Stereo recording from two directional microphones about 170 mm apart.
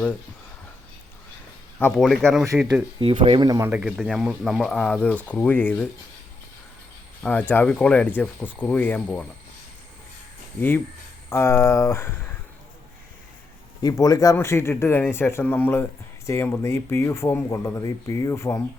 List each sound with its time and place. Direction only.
1.8 s speech: centre (ahead or behind)
3.0 s speech: 30° right (ahead or behind)
3.7 s speech: 5° right (ahead or behind)
7.2 s speech: 10° left (ahead or behind)
11.3 s speech: 15° left (ahead or behind)
13.8 s speech: 20° left (ahead or behind)